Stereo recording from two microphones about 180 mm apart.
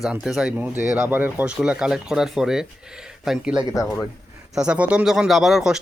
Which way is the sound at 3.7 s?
20° left (ahead or behind).